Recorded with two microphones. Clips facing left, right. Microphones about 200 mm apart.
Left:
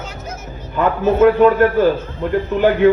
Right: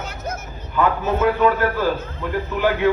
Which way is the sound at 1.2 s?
50° left (ahead or behind).